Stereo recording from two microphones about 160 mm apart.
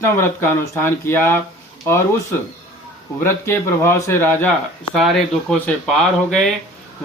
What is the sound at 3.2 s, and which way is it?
Speech, 15° left (ahead or behind).